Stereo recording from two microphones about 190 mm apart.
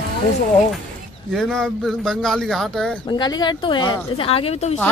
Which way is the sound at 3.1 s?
20° left (ahead or behind).